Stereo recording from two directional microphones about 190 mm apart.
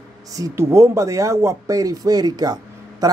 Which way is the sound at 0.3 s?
15° right (ahead or behind).